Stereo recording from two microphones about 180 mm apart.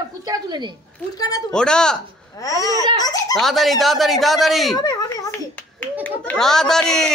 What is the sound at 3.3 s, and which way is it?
Speech, centre (ahead or behind).